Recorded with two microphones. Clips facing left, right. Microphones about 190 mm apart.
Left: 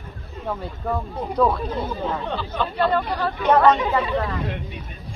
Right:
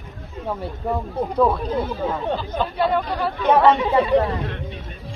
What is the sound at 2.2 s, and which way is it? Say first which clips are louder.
Speech: right 3 dB; 40° right (ahead or behind).